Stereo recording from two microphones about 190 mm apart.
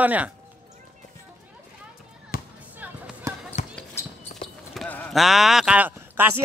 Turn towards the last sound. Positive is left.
turn(degrees=-10)  # may be behind; listen again after turning